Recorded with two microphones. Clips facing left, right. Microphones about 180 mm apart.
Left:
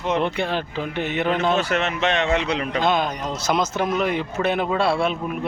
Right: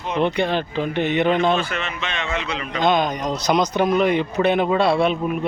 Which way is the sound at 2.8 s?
5° left (ahead or behind).